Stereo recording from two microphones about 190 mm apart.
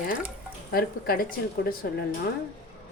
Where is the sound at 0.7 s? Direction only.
50° left (ahead or behind).